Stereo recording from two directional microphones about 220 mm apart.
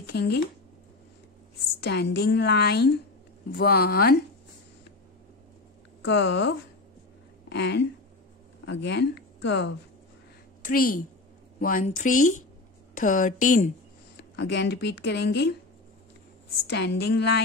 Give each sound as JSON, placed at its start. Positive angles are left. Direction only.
{"t": 0.1, "sound": "speech", "side_deg": 50}
{"t": 1.8, "sound": "speech", "side_deg": 50}
{"t": 6.0, "sound": "speech", "side_deg": 55}
{"t": 10.6, "sound": "a woman's voice", "side_deg": 40}
{"t": 14.3, "sound": "speech", "side_deg": 55}
{"t": 16.6, "sound": "speech", "side_deg": 50}